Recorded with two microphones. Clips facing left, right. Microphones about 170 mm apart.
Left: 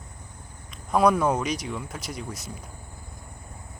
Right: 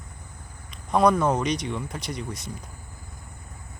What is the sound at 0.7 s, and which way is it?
Speech, 5° left (ahead or behind).